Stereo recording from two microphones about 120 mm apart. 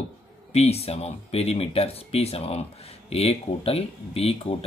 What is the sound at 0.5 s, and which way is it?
Speech, 60° left (ahead or behind).